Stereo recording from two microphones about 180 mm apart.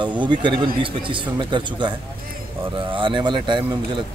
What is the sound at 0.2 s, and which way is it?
Speech, 25° right (ahead or behind).